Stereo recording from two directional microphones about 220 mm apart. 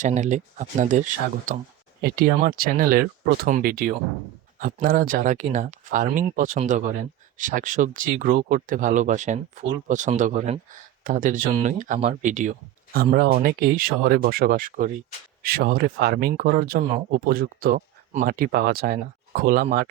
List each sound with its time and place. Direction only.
0.0 s speech: 35° right (ahead or behind)